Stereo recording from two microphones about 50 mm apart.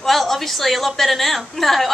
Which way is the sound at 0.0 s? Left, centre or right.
Centre.